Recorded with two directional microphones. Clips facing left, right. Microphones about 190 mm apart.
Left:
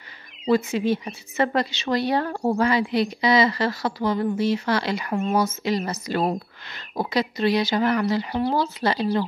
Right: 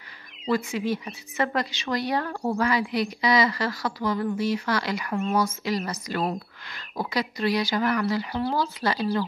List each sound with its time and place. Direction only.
0.5 s a woman's voice: 25° left (ahead or behind)